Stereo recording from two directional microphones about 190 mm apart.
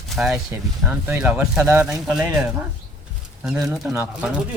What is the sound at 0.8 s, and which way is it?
Speech, 10° right (ahead or behind).